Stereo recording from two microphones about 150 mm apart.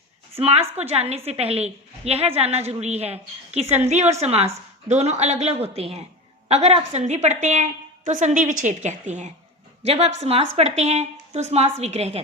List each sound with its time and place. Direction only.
0.3 s a woman's voice: 40° right (ahead or behind)